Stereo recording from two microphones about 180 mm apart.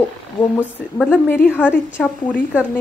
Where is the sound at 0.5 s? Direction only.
10° left (ahead or behind).